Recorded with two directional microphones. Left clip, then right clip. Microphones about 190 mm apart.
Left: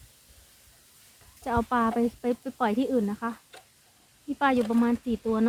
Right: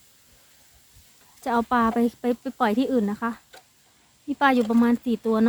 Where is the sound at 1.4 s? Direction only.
25° right (ahead or behind).